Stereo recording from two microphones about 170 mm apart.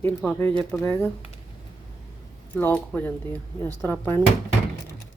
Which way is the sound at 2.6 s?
10° left (ahead or behind).